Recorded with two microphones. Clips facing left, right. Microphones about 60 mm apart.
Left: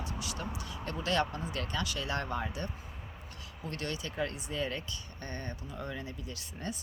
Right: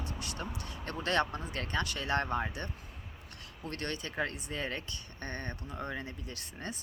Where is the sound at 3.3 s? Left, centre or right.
Right.